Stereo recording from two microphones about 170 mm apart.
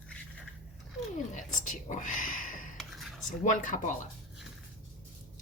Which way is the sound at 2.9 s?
Centre (ahead or behind).